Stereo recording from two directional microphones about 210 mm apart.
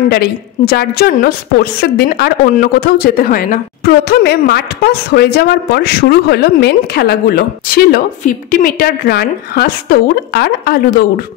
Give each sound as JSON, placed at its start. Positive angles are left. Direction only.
{"t": 0.1, "sound": "a woman's voice", "side_deg": 50}